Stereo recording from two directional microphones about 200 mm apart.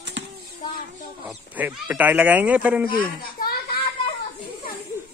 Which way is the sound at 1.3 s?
5° right (ahead or behind).